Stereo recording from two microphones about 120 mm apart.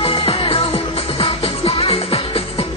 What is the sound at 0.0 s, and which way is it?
Music, 55° left (ahead or behind).